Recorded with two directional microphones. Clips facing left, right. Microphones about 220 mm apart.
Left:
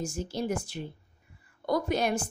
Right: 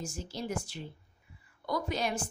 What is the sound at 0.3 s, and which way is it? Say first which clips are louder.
A woman's voice: left 3 dB; 55° left (ahead or behind).